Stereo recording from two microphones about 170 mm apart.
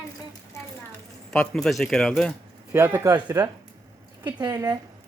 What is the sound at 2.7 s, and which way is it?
A man's voice, 15° right (ahead or behind).